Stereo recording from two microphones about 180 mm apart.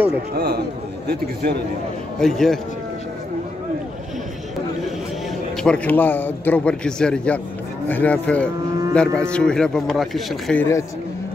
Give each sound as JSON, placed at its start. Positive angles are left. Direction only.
{"t": 0.3, "sound": "a man's voice", "side_deg": -55}
{"t": 2.1, "sound": "speech", "side_deg": 0}
{"t": 5.6, "sound": "a man's voice", "side_deg": 5}
{"t": 10.6, "sound": "a man's voice", "side_deg": 15}